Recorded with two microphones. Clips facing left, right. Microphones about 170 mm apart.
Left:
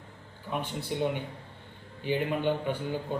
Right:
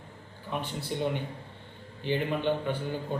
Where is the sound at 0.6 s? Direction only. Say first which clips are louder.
Left 1 dB; 10° left (ahead or behind).